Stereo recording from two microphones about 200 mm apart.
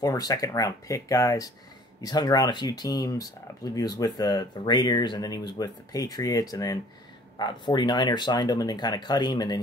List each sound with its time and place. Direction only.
0.0 s speech: 15° left (ahead or behind)